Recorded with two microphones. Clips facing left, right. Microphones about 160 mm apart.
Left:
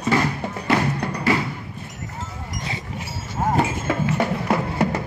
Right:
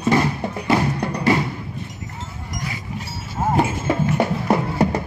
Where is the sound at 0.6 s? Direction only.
10° right (ahead or behind).